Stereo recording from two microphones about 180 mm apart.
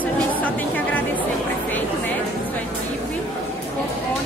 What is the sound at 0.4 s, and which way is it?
Music, 10° left (ahead or behind).